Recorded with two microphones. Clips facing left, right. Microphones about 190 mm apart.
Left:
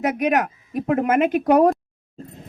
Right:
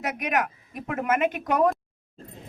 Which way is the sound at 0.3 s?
40° left (ahead or behind).